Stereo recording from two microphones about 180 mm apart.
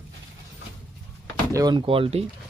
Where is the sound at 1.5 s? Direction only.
20° right (ahead or behind).